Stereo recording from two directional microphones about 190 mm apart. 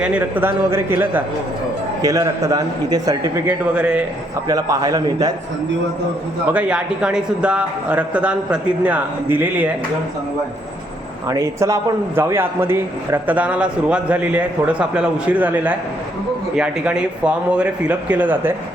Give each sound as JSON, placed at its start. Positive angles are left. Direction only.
{"t": 0.0, "sound": "a man's voice", "side_deg": -10}
{"t": 4.4, "sound": "a man's voice", "side_deg": -20}
{"t": 6.5, "sound": "a man's voice", "side_deg": -5}
{"t": 11.3, "sound": "a man's voice", "side_deg": -15}